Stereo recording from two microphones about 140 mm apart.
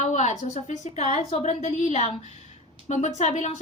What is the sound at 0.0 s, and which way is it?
A woman's voice, 60° left (ahead or behind).